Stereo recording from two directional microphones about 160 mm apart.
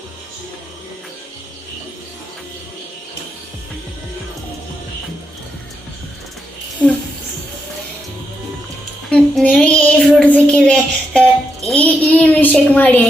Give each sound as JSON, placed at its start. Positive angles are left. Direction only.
{"t": 6.8, "sound": "speech", "side_deg": 10}
{"t": 9.0, "sound": "child singing", "side_deg": 5}